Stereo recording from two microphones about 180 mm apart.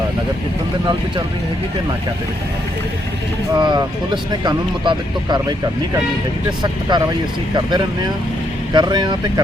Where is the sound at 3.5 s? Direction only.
25° right (ahead or behind).